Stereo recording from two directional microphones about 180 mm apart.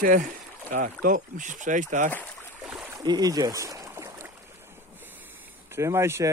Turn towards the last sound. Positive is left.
turn(degrees=-15)  # may be behind; listen again after turning